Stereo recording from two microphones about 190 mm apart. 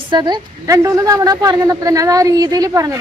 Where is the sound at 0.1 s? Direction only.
20° right (ahead or behind).